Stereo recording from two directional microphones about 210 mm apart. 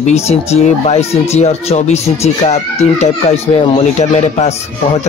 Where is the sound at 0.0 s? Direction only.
30° left (ahead or behind).